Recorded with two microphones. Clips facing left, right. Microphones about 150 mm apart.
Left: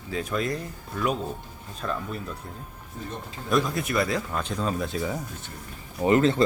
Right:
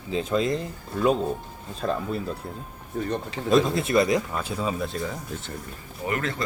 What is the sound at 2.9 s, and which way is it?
Speech, 70° right (ahead or behind).